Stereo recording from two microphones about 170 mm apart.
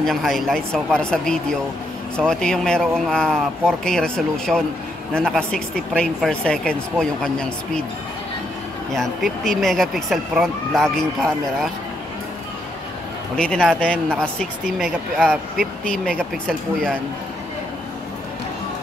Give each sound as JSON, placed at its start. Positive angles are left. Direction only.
{"t": 0.0, "sound": "speech", "side_deg": 0}
{"t": 8.9, "sound": "speech", "side_deg": 0}
{"t": 13.4, "sound": "speech", "side_deg": 5}